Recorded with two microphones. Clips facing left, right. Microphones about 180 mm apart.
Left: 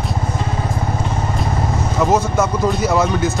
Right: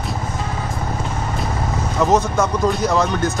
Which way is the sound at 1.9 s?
Centre (ahead or behind).